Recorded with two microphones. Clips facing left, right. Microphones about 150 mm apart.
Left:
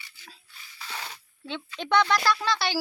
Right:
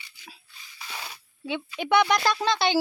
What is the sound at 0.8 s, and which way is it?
Speech, 15° right (ahead or behind).